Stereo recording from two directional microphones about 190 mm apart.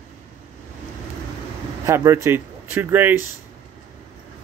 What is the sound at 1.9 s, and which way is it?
Speech, 15° right (ahead or behind).